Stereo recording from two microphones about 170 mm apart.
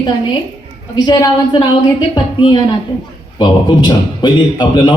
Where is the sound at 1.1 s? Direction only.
25° left (ahead or behind).